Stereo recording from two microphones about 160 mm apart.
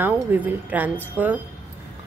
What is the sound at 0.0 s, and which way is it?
A woman's voice, 10° right (ahead or behind).